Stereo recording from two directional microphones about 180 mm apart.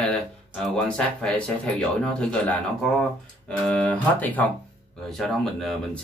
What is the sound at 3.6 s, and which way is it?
Speech, 10° left (ahead or behind).